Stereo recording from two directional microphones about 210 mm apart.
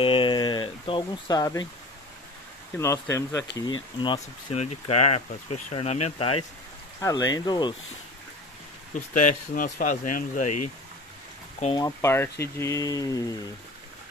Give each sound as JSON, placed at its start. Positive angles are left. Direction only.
{"t": 0.0, "sound": "a sound", "side_deg": 25}
{"t": 2.8, "sound": "speech", "side_deg": 15}
{"t": 7.0, "sound": "speech", "side_deg": 15}
{"t": 8.9, "sound": "speech", "side_deg": 40}
{"t": 11.7, "sound": "speech", "side_deg": 15}